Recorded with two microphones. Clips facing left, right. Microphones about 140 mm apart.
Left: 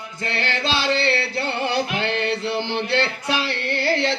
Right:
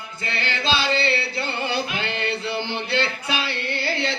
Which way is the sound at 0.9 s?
80° left.